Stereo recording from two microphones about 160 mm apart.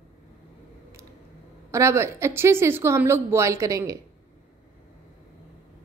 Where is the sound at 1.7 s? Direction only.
15° right (ahead or behind).